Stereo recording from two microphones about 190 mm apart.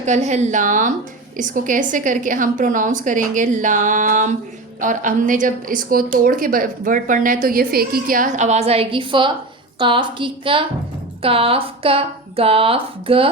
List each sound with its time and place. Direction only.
0.0 s a woman's voice: 40° right (ahead or behind)